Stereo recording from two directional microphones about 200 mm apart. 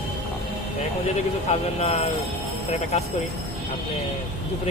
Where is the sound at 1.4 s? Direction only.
30° left (ahead or behind).